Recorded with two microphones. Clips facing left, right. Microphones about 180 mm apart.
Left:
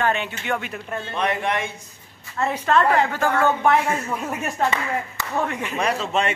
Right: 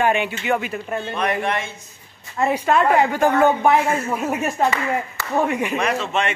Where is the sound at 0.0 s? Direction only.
15° right (ahead or behind).